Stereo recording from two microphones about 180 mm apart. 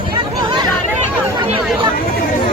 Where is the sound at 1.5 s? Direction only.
30° right (ahead or behind).